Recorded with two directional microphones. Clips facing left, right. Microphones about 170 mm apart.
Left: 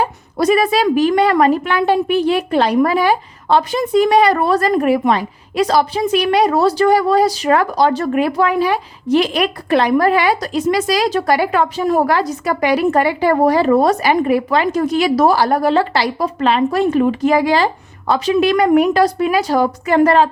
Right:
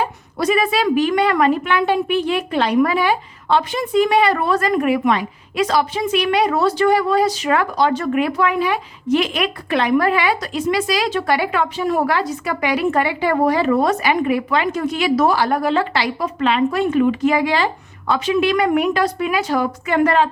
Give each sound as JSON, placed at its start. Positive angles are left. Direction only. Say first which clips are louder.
{"t": 0.0, "sound": "a woman's voice", "louder": "left 4 dB", "side_deg": 40}